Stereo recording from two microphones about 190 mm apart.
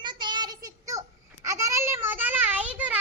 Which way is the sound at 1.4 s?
15° right (ahead or behind).